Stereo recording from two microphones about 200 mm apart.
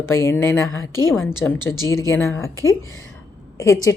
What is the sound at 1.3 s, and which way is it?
Speech, 10° left (ahead or behind).